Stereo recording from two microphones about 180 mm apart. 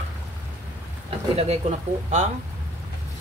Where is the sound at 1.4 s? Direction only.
35° right (ahead or behind).